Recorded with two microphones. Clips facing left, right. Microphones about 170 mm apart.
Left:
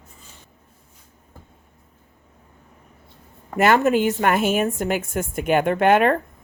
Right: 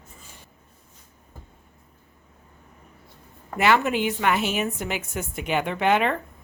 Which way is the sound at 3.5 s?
45° left (ahead or behind).